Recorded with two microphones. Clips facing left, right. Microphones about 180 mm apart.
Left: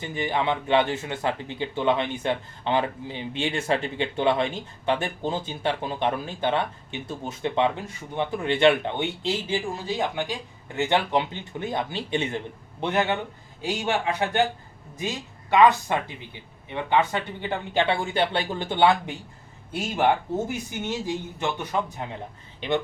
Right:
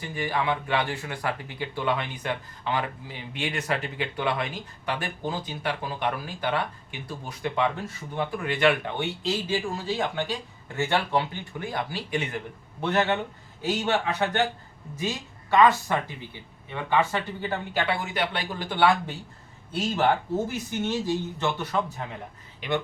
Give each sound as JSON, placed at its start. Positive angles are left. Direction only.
{"t": 0.0, "sound": "speech", "side_deg": 20}